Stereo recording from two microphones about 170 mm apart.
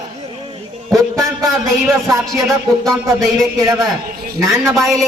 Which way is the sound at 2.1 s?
20° right (ahead or behind).